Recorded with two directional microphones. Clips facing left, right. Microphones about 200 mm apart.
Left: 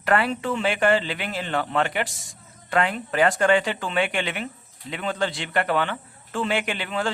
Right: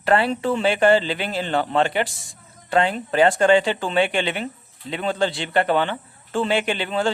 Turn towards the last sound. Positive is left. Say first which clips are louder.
# right 4 dB
turn(degrees=-30)  # may be behind; listen again after turning